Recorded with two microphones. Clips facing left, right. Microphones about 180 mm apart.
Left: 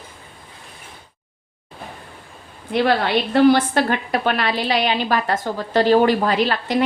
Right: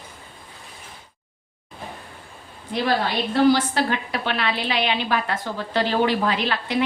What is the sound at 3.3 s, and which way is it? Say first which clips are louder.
A woman's voice: left 3 dB; 60° left (ahead or behind).